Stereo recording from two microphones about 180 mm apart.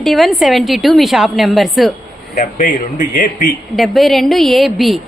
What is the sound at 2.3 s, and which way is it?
Speech, 40° left (ahead or behind).